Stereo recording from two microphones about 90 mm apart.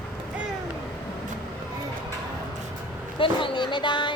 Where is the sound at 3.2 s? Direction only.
70° left (ahead or behind).